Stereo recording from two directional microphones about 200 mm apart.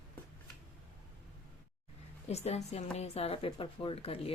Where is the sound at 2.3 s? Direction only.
35° left (ahead or behind).